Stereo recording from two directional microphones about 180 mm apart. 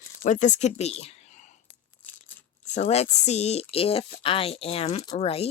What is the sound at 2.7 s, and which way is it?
Speech, 40° left (ahead or behind).